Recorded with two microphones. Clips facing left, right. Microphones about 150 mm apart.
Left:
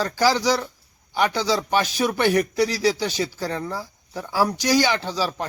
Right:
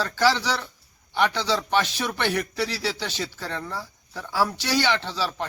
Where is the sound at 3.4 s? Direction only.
40° left (ahead or behind).